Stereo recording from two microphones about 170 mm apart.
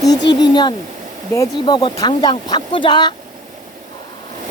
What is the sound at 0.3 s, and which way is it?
Speech, 25° left (ahead or behind).